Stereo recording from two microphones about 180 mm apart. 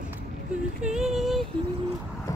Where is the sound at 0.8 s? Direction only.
Centre (ahead or behind).